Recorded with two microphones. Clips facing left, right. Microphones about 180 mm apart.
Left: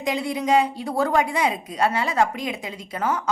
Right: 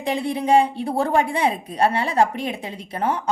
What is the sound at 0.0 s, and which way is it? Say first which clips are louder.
A woman's voice: right 1 dB; 30° right (ahead or behind).